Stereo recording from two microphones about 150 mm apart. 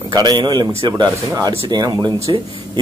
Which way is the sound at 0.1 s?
30° right (ahead or behind).